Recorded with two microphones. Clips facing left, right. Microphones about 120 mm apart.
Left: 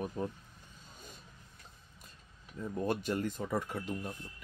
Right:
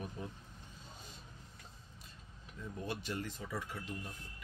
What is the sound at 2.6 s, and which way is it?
Speech, 45° left (ahead or behind).